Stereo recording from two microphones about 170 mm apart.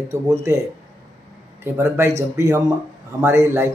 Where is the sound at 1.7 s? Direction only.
15° right (ahead or behind).